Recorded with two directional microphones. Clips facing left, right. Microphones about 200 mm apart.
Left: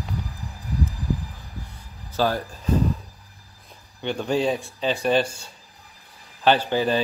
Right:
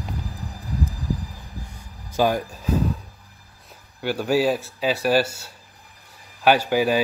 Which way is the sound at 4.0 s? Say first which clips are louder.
Right 2 dB; 5° right (ahead or behind).